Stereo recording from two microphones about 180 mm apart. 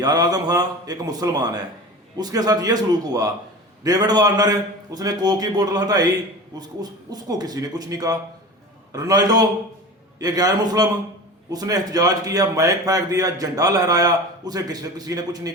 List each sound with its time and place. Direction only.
0.0 s a man's voice: 20° right (ahead or behind)